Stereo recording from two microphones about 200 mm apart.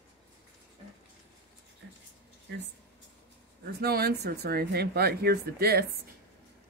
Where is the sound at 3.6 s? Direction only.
50° right (ahead or behind).